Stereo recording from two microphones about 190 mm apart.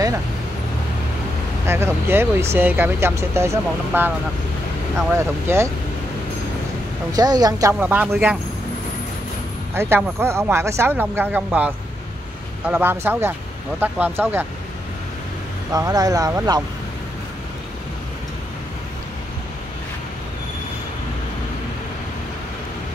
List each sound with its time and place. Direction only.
1.7 s speech: 15° right (ahead or behind)
5.1 s speech: 15° right (ahead or behind)
7.1 s speech: 20° right (ahead or behind)
7.8 s speech: 10° right (ahead or behind)
9.8 s speech: 10° right (ahead or behind)
15.7 s speech: 20° right (ahead or behind)